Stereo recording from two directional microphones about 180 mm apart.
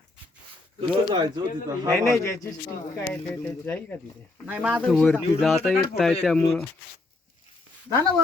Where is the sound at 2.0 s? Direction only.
15° left (ahead or behind).